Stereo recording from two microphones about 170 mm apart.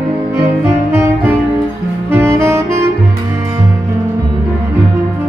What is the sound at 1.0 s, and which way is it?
Music, 10° right (ahead or behind).